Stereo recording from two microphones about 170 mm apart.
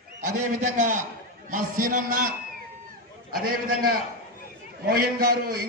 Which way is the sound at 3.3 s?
60° right (ahead or behind).